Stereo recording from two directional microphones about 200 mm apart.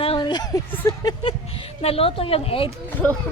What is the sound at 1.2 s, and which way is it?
A woman's voice, 25° left (ahead or behind).